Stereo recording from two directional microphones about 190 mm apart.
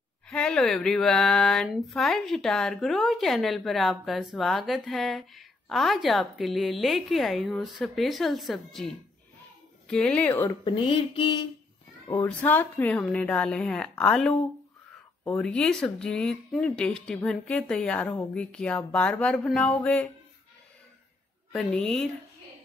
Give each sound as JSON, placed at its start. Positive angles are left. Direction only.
{"t": 0.3, "sound": "a woman's voice", "side_deg": 5}
{"t": 10.6, "sound": "a sound", "side_deg": 30}
{"t": 12.1, "sound": "a woman's voice", "side_deg": 10}
{"t": 21.5, "sound": "speech", "side_deg": 5}